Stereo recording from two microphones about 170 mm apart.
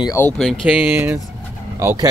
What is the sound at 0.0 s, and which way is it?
Speech, 15° left (ahead or behind).